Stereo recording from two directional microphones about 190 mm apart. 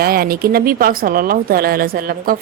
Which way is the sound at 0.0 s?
50° right (ahead or behind).